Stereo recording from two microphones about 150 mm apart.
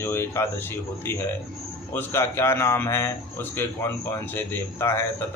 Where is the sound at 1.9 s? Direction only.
20° left (ahead or behind).